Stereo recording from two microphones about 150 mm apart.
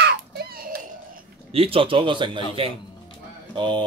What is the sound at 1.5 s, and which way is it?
A man's voice, 40° right (ahead or behind).